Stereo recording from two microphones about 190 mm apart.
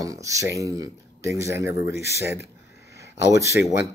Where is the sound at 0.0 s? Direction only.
15° right (ahead or behind).